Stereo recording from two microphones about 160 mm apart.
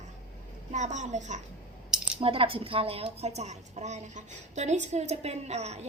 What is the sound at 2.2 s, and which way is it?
A woman's voice, 35° right (ahead or behind).